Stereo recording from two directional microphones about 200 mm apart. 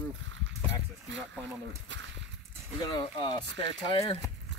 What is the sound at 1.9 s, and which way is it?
Speech, 60° right (ahead or behind).